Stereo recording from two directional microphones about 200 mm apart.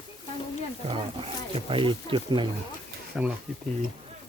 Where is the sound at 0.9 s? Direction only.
25° right (ahead or behind).